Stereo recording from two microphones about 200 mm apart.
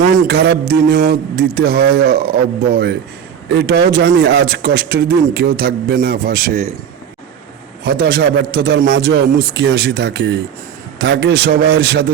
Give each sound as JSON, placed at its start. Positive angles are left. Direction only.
{"t": 0.3, "sound": "a man's voice", "side_deg": -55}
{"t": 7.9, "sound": "a man's voice", "side_deg": -50}